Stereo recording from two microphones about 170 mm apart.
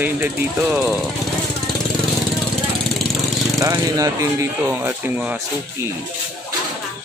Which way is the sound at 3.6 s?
20° right (ahead or behind).